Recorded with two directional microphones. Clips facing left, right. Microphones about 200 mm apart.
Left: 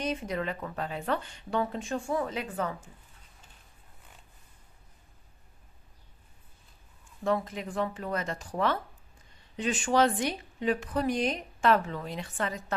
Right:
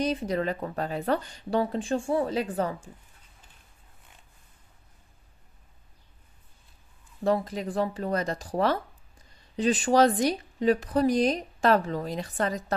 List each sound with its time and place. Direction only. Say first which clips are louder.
0.0 s a woman's voice: right 5 dB; 35° right (ahead or behind)
7.2 s a woman's voice: right 4 dB; 35° right (ahead or behind)